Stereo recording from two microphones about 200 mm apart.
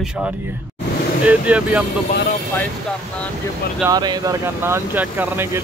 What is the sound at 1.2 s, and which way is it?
Speech, 5° right (ahead or behind).